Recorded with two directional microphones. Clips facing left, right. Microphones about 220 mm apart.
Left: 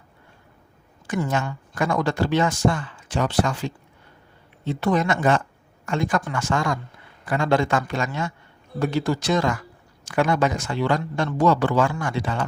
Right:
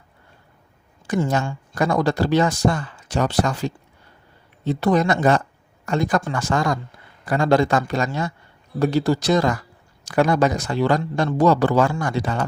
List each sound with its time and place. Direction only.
1.0 s speech: 35° right (ahead or behind)